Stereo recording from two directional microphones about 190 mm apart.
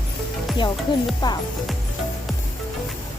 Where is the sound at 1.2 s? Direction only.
20° left (ahead or behind).